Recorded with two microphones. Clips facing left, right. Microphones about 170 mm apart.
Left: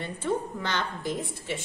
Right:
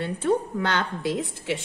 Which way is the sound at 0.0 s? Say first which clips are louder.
Right 5 dB; 65° right (ahead or behind).